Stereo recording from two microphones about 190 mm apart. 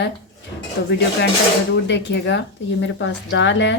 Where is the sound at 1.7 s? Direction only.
65° left (ahead or behind).